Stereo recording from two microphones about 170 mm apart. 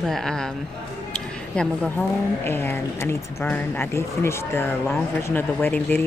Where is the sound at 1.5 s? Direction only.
5° left (ahead or behind).